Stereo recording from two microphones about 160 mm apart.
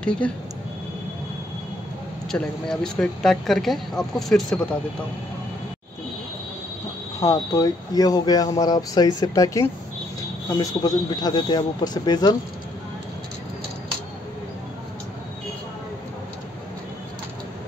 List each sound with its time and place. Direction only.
0.0 s speech: 5° left (ahead or behind)
2.3 s speech: 5° left (ahead or behind)
7.2 s speech: 20° left (ahead or behind)